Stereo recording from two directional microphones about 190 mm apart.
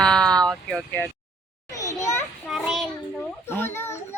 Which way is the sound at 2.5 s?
Centre (ahead or behind).